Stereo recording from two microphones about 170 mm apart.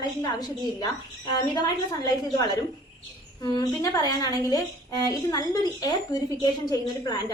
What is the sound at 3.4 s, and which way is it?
A woman's voice, 20° left (ahead or behind).